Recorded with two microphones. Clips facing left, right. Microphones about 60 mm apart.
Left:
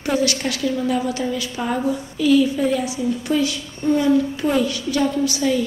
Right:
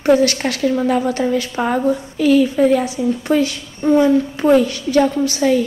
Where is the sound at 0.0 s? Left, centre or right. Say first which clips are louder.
Right 7 dB; right.